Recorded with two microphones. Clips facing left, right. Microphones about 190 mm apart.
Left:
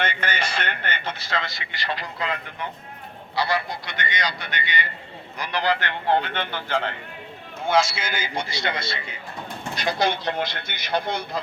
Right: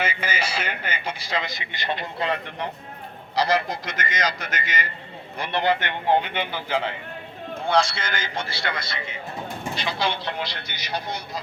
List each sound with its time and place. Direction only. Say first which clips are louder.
0.0 s speech: even; 5° right (ahead or behind); by 2.6 s 25° right (ahead or behind)
3.3 s a man's voice: right 3 dB; 40° right (ahead or behind)
5.4 s speech: right 1 dB; 25° right (ahead or behind)
6.1 s a man's voice: right 1 dB; 10° right (ahead or behind); by 9.0 s 25° left (ahead or behind)
9.8 s speech: left 5 dB; 45° left (ahead or behind)